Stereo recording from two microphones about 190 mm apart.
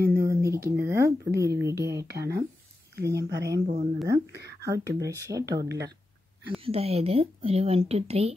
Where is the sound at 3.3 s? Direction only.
65° right (ahead or behind).